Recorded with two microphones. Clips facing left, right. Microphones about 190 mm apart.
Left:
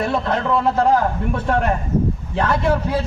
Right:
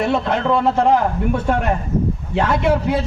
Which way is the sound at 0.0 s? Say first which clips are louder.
Right 2 dB; 20° right (ahead or behind).